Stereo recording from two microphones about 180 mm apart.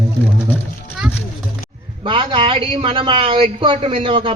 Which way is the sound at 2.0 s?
30° right (ahead or behind).